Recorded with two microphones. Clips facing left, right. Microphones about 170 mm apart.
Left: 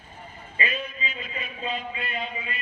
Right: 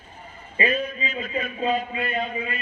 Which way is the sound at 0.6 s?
45° right (ahead or behind).